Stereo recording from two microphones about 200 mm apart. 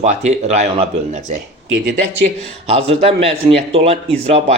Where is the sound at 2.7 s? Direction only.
30° right (ahead or behind).